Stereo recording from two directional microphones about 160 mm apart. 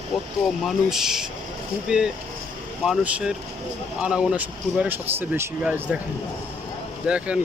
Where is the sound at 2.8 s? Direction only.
5° right (ahead or behind).